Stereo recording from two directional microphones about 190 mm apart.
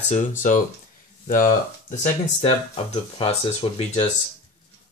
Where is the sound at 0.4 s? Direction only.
40° left (ahead or behind).